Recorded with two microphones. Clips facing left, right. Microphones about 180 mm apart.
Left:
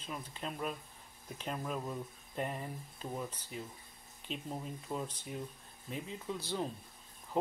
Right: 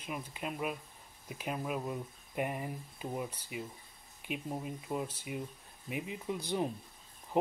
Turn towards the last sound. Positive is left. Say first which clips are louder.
# right 3 dB
turn(degrees=-20)  # may be behind; listen again after turning